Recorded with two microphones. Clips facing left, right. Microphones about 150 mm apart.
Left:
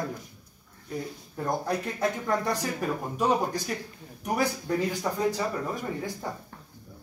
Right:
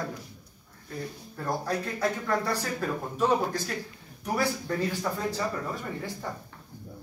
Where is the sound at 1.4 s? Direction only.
20° left (ahead or behind).